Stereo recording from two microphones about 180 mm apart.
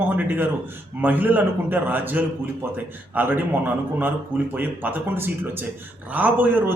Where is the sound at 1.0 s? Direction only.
10° right (ahead or behind).